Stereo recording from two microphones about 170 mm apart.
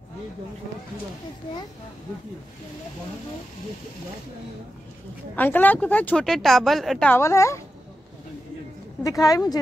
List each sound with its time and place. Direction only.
5.3 s a woman's voice: 10° left (ahead or behind)
9.0 s a woman's voice: 20° left (ahead or behind)